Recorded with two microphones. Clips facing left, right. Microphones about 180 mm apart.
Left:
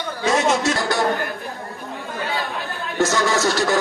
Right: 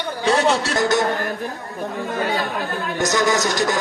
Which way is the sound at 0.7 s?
20° right (ahead or behind).